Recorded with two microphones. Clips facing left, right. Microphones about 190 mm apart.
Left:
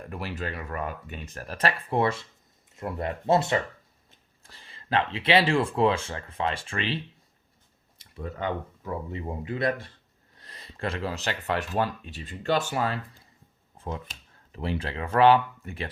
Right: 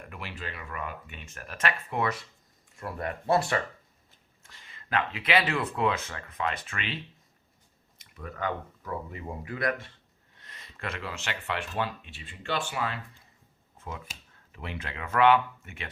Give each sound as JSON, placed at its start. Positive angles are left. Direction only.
{"t": 0.1, "sound": "speech", "side_deg": 40}
{"t": 4.4, "sound": "speech", "side_deg": 35}
{"t": 13.7, "sound": "finger snapping", "side_deg": 30}
{"t": 14.5, "sound": "speech", "side_deg": 30}